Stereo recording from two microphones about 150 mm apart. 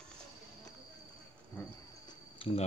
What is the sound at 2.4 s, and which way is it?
Cricket, 35° left (ahead or behind).